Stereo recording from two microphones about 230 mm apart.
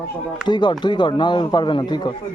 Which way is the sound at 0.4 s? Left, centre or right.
Centre.